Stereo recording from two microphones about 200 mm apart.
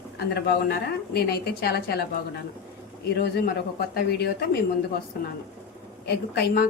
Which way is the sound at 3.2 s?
55° left (ahead or behind).